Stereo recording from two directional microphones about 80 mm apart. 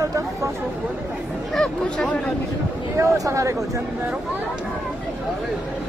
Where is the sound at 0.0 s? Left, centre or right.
Right.